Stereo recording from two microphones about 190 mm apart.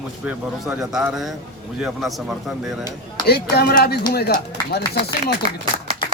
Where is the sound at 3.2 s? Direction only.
55° left (ahead or behind).